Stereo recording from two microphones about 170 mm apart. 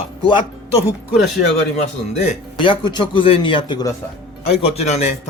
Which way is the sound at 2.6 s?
25° left (ahead or behind).